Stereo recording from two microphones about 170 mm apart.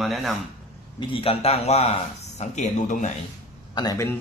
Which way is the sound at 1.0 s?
30° left (ahead or behind).